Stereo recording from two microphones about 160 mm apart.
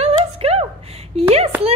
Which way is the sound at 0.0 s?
40° right (ahead or behind).